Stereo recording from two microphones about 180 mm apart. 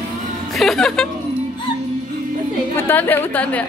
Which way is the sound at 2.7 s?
10° left (ahead or behind).